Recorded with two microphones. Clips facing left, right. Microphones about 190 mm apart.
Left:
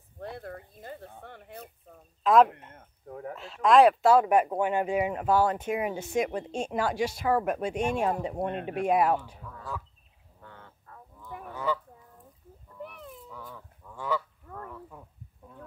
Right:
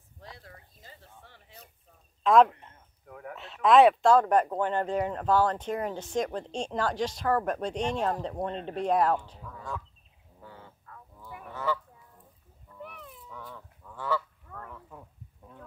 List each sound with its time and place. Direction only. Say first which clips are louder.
0.2 s a sound: left 11 dB; 55° left (ahead or behind)
2.2 s speech: even; centre (ahead or behind)
3.1 s speech: left 4 dB; 30° left (ahead or behind)
3.3 s speech: even; centre (ahead or behind)
10.4 s goose: right 2 dB; 5° right (ahead or behind)
11.5 s speech: left 1 dB; 15° left (ahead or behind)
13.3 s dog: even; 5° left (ahead or behind)
13.9 s goose: even; 15° left (ahead or behind)
14.7 s a sound: left 2 dB; centre (ahead or behind)